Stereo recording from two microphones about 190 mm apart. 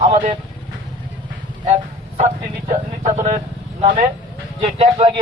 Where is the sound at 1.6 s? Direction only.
30° right (ahead or behind).